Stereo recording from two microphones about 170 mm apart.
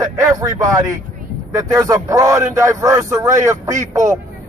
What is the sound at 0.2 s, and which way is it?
A man's voice, 20° right (ahead or behind).